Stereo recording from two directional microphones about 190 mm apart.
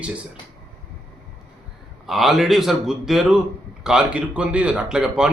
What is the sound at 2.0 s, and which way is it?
Speech, centre (ahead or behind).